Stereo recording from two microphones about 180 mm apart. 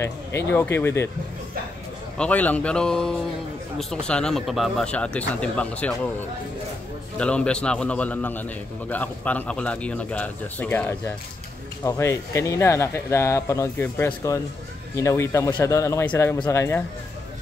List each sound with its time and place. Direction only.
0.0 s a man's voice: 15° left (ahead or behind)
2.1 s speech: 5° left (ahead or behind)
7.2 s a man's voice: 5° left (ahead or behind)